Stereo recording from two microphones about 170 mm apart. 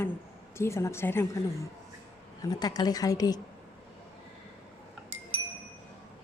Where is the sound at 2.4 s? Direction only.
20° left (ahead or behind).